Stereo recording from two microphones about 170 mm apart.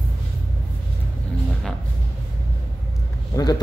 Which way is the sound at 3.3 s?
20° left (ahead or behind).